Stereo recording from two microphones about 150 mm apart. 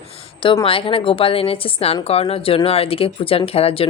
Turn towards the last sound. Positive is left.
turn(degrees=40)  # may be behind; listen again after turning